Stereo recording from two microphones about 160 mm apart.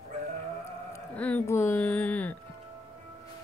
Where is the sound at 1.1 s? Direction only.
10° left (ahead or behind).